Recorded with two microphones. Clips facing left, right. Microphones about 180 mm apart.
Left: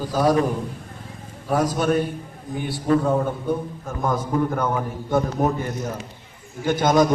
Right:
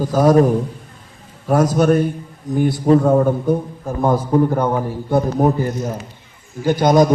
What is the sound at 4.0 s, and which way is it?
A man's voice, 30° right (ahead or behind).